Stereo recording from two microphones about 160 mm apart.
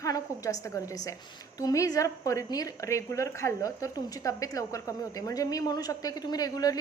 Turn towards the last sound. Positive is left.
turn(degrees=25)  # may be behind; listen again after turning